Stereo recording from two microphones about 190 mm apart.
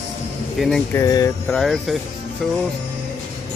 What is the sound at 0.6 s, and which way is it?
Speech, 5° left (ahead or behind).